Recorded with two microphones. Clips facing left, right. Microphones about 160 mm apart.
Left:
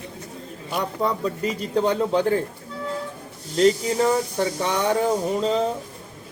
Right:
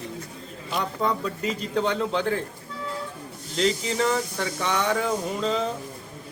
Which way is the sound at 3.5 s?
45° left (ahead or behind).